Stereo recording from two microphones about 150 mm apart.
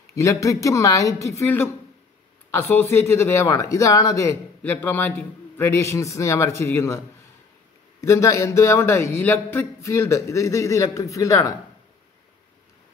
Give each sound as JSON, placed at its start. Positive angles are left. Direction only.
{"t": 0.1, "sound": "speech", "side_deg": 20}
{"t": 8.0, "sound": "speech", "side_deg": 20}